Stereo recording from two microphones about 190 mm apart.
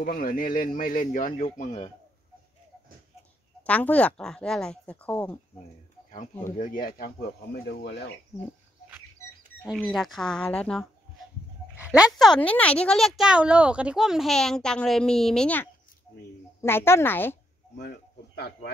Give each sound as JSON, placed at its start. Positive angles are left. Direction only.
{"t": 0.0, "sound": "speech", "side_deg": 50}
{"t": 3.6, "sound": "speech", "side_deg": 5}
{"t": 6.5, "sound": "speech", "side_deg": 45}
{"t": 7.6, "sound": "speech", "side_deg": 60}
{"t": 8.3, "sound": "speech", "side_deg": 15}
{"t": 9.7, "sound": "speech", "side_deg": 0}
{"t": 11.7, "sound": "dog", "side_deg": -5}
{"t": 12.4, "sound": "speech", "side_deg": 5}
{"t": 17.7, "sound": "speech", "side_deg": 60}